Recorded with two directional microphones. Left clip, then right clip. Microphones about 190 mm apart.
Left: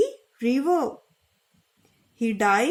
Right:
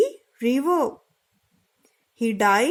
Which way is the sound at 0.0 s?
30° right (ahead or behind).